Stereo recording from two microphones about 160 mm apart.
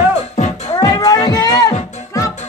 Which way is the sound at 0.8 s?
25° left (ahead or behind).